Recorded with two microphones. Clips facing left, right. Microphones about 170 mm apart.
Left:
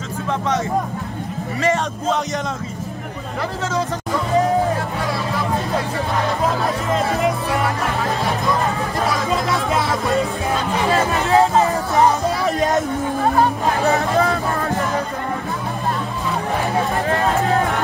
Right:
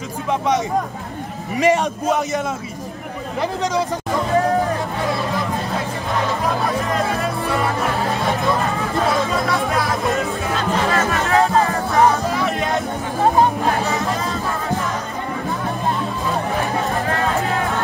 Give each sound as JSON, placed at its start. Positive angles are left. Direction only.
{"t": 1.6, "sound": "speech", "side_deg": -10}
{"t": 6.9, "sound": "music", "side_deg": 20}
{"t": 9.5, "sound": "music", "side_deg": 25}
{"t": 12.4, "sound": "music", "side_deg": 35}
{"t": 13.9, "sound": "hubbub", "side_deg": 60}